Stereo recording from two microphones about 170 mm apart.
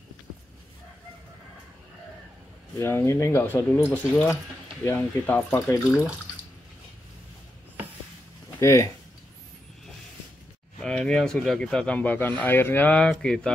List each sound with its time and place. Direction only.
2.8 s speech: 15° left (ahead or behind)
8.5 s speech: 15° left (ahead or behind)
10.8 s speech: 5° left (ahead or behind)